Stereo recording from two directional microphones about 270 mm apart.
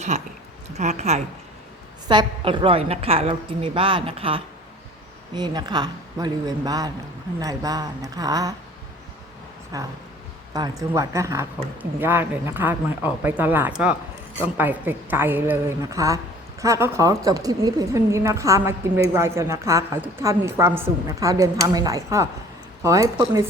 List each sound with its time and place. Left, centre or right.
0.1 s a woman's voice: right
9.7 s a woman's voice: centre